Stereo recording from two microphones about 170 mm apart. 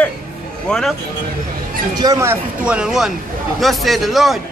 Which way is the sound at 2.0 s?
20° right (ahead or behind).